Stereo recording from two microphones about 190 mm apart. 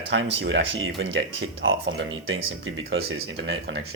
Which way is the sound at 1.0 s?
90° right.